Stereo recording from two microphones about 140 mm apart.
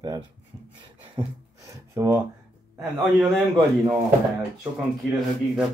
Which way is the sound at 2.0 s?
20° right (ahead or behind).